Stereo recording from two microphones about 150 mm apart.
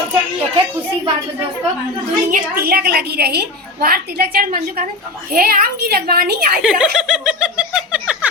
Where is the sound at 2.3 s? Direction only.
80° right.